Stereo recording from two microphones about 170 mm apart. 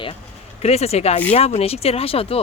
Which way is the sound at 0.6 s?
40° left (ahead or behind).